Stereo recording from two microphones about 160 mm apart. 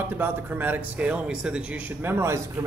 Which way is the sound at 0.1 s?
15° right (ahead or behind).